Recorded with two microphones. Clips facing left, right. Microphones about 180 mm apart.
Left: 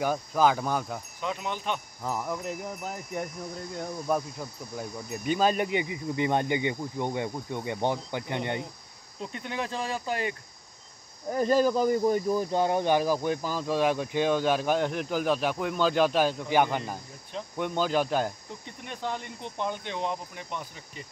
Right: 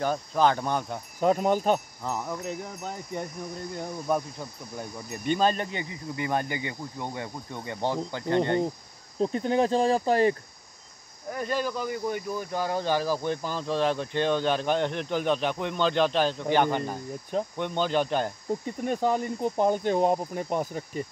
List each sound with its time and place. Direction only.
0.0 s speech: 5° left (ahead or behind)
1.2 s speech: 45° right (ahead or behind)
2.0 s speech: 10° left (ahead or behind)
9.2 s speech: 35° right (ahead or behind)
11.3 s speech: 40° left (ahead or behind); by 18.3 s 5° left (ahead or behind)
18.5 s speech: 45° right (ahead or behind)